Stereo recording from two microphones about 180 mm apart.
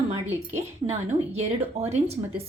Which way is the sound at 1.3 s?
35° right (ahead or behind).